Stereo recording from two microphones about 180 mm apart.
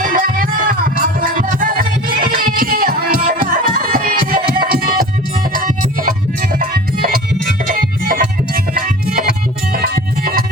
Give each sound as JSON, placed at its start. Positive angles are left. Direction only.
{"t": 0.0, "sound": "music", "side_deg": -50}